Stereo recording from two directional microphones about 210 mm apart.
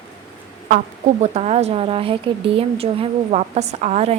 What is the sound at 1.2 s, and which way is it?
A woman's voice, 30° right (ahead or behind).